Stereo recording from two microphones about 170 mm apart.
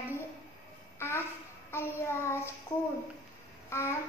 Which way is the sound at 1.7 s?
15° left (ahead or behind).